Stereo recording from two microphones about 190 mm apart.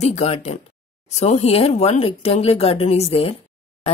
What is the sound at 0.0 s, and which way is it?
Speech, 35° left (ahead or behind).